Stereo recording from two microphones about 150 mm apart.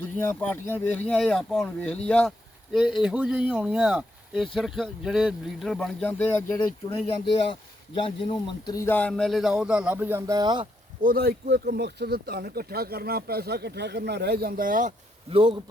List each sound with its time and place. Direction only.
0.2 s speech: 15° left (ahead or behind)
2.7 s speech: 5° right (ahead or behind)
8.0 s speech: 35° left (ahead or behind); by 10.7 s 30° right (ahead or behind)
11.0 s speech: 80° right; by 14.9 s 60° right (ahead or behind)
15.3 s speech: 35° right (ahead or behind)